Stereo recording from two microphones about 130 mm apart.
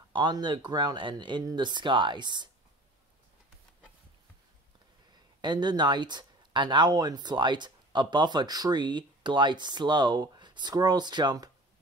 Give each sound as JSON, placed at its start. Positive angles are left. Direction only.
{"t": 0.1, "sound": "speech", "side_deg": -35}
{"t": 5.4, "sound": "speech", "side_deg": -35}